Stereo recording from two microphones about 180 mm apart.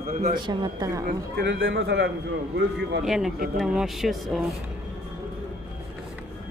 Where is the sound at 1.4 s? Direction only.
90° right; by 2.1 s 70° right (ahead or behind).